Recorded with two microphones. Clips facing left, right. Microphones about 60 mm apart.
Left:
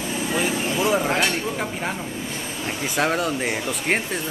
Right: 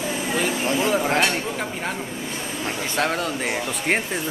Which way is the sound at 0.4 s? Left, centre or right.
Centre.